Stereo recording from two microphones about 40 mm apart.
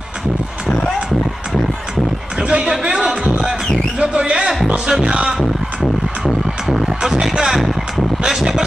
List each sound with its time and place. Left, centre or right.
2.4 s music: centre
5.8 s music: centre